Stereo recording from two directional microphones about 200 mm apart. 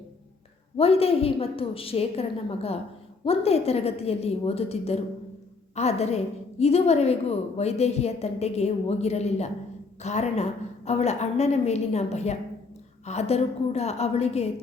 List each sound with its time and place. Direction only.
0.8 s a woman's voice: 30° left (ahead or behind)